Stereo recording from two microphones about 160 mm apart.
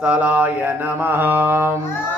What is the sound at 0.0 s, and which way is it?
Mantra, 10° right (ahead or behind).